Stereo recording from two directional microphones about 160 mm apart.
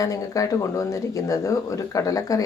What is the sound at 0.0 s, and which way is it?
Speech, 20° left (ahead or behind).